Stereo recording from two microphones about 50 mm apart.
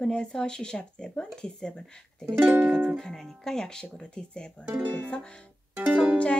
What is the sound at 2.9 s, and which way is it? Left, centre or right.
A woman's voice, centre.